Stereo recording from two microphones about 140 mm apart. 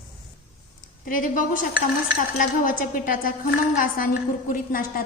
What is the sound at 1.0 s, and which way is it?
A woman's voice, 75° left (ahead or behind).